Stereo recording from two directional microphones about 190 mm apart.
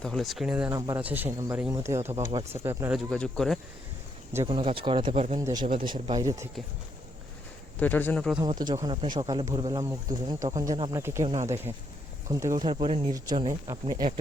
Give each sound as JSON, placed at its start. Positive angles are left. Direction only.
{"t": 0.0, "sound": "speech", "side_deg": 0}
{"t": 0.7, "sound": "speech", "side_deg": -20}
{"t": 3.1, "sound": "speech", "side_deg": 0}
{"t": 4.4, "sound": "speech", "side_deg": -30}
{"t": 5.4, "sound": "speech", "side_deg": -15}
{"t": 5.6, "sound": "speech", "side_deg": -25}
{"t": 7.8, "sound": "speech", "side_deg": 10}
{"t": 8.4, "sound": "speech", "side_deg": -20}
{"t": 12.3, "sound": "speech", "side_deg": -15}
{"t": 13.1, "sound": "speech", "side_deg": -20}